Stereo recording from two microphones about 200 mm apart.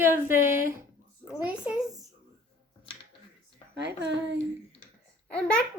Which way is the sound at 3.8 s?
60° right (ahead or behind).